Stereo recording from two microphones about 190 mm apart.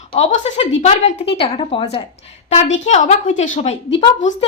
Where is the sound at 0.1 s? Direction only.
35° left (ahead or behind).